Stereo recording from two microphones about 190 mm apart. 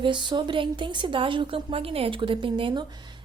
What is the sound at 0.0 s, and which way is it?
Speech, 25° right (ahead or behind).